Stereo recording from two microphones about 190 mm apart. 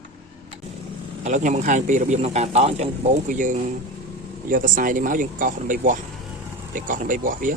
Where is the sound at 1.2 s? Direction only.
40° right (ahead or behind).